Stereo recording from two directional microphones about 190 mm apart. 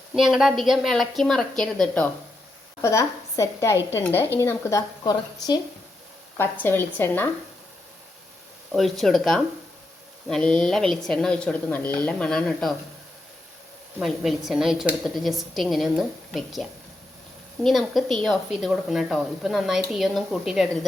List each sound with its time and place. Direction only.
0.1 s a woman's voice: 5° right (ahead or behind)
2.8 s a woman's voice: 15° left (ahead or behind)
8.7 s a woman's voice: centre (ahead or behind)
14.0 s a woman's voice: centre (ahead or behind)